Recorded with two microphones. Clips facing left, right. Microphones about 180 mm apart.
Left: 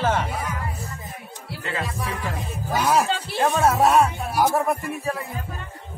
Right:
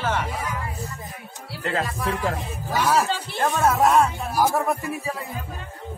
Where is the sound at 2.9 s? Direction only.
15° left (ahead or behind).